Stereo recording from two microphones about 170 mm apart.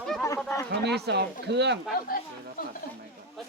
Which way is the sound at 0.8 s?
75° right (ahead or behind).